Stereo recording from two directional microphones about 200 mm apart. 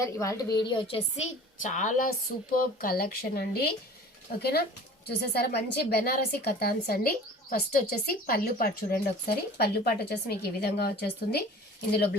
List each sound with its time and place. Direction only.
0.0 s a woman's voice: 15° left (ahead or behind)
1.6 s speech: 40° left (ahead or behind)